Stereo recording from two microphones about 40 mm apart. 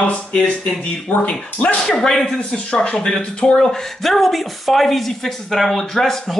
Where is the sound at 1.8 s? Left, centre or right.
Centre.